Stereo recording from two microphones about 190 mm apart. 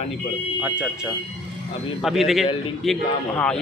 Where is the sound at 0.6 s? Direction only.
5° right (ahead or behind).